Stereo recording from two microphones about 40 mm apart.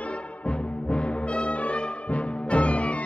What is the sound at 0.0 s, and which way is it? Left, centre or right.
Music, left.